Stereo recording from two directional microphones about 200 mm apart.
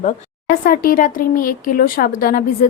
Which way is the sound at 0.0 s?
45° left (ahead or behind).